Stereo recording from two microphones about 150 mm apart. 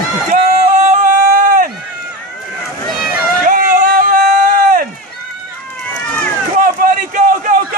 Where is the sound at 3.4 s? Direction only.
60° right (ahead or behind).